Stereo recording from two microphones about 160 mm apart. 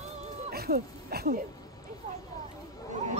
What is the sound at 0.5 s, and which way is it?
Speech, 75° right (ahead or behind).